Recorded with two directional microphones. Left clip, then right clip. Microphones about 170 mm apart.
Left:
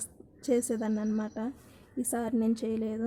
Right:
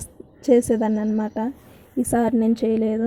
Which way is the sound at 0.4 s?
15° right (ahead or behind).